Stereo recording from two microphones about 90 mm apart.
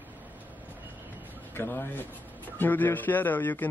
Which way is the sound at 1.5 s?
25° left (ahead or behind).